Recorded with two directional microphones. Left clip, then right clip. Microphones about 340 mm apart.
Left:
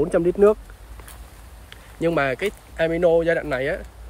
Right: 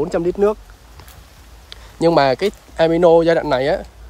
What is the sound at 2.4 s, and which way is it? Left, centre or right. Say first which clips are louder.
Speech: right 7 dB; right.